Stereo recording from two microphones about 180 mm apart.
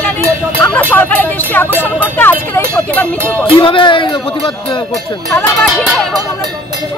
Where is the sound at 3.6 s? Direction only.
25° left (ahead or behind).